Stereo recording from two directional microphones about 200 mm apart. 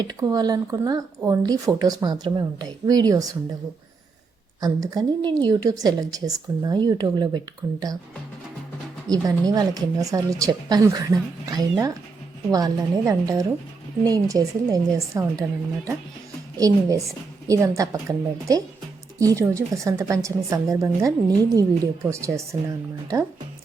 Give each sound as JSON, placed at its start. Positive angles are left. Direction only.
{"t": 0.0, "sound": "a woman's voice", "side_deg": -20}
{"t": 4.6, "sound": "a woman's voice", "side_deg": -20}
{"t": 9.0, "sound": "a woman's voice", "side_deg": -20}